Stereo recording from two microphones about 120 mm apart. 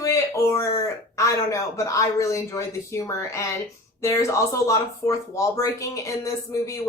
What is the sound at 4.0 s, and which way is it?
Speech, 25° left (ahead or behind).